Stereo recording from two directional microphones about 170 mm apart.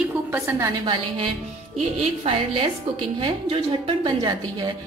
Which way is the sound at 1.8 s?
35° right (ahead or behind).